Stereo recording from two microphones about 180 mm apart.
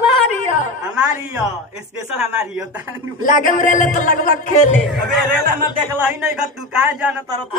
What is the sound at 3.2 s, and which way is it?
A man's voice, 45° left (ahead or behind).